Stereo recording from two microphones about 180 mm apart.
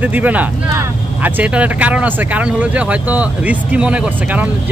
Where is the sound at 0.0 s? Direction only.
10° right (ahead or behind).